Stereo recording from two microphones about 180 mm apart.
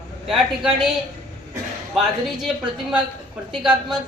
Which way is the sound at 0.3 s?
5° right (ahead or behind).